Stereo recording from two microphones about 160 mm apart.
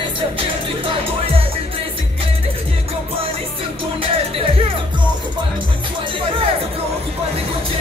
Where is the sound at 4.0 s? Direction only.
35° right (ahead or behind).